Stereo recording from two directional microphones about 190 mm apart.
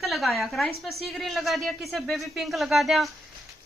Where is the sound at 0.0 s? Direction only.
Centre (ahead or behind).